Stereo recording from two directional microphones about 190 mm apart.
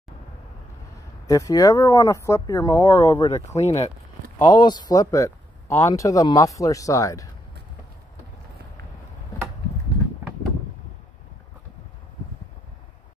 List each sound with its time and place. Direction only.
1.2 s speech: 20° left (ahead or behind)
3.4 s speech: 35° left (ahead or behind)
4.4 s speech: 20° left (ahead or behind)